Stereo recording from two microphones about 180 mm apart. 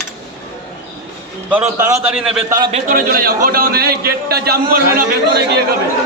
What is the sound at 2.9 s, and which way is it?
A man's voice, 50° right (ahead or behind).